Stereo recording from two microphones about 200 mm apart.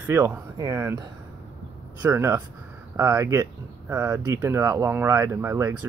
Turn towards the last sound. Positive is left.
turn(degrees=-15)  # may be behind; listen again after turning